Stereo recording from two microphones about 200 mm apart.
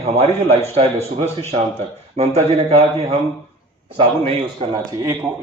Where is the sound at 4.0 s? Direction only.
25° right (ahead or behind).